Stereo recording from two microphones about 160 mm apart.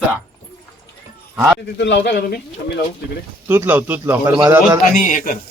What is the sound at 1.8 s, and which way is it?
Speech, 90° left.